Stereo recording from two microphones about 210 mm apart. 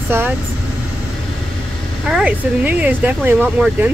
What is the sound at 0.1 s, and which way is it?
Speech, 10° right (ahead or behind).